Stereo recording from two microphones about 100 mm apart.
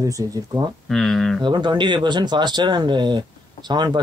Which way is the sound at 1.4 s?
50° right (ahead or behind).